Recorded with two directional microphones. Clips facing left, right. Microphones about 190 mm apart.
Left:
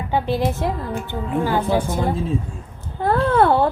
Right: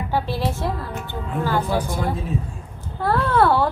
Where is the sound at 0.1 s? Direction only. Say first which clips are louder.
Left 4 dB; 15° left (ahead or behind).